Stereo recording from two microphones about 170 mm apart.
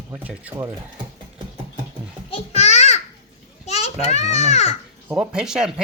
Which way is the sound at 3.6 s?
40° left (ahead or behind).